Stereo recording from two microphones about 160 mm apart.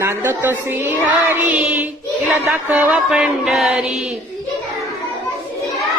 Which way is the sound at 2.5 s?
5° right (ahead or behind).